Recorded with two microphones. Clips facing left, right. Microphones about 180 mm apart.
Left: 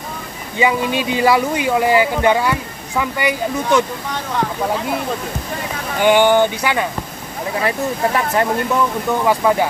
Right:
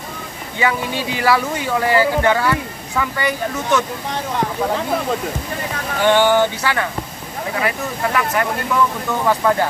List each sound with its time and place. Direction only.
0.6 s speech: 20° left (ahead or behind)
5.9 s speech: 15° left (ahead or behind)
7.6 s speech: 30° left (ahead or behind)
9.2 s speech: 10° left (ahead or behind)